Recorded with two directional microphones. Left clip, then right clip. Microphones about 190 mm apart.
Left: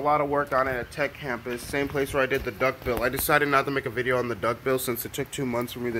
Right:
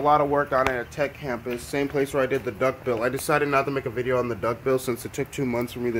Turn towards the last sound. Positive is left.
turn(degrees=-10)  # may be behind; listen again after turning